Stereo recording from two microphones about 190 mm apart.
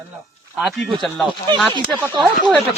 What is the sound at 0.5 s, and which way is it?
Speech, centre (ahead or behind).